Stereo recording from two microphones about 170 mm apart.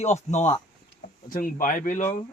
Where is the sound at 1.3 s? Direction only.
55° left (ahead or behind).